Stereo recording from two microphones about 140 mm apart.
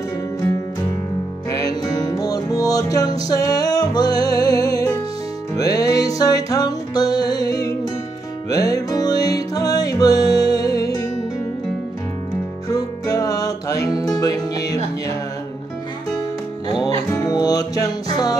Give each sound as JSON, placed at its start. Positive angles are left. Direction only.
{"t": 1.5, "sound": "music", "side_deg": 25}
{"t": 12.6, "sound": "music", "side_deg": 25}
{"t": 17.1, "sound": "music", "side_deg": 30}